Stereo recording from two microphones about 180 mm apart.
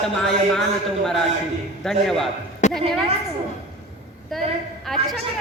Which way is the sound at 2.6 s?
40° left (ahead or behind).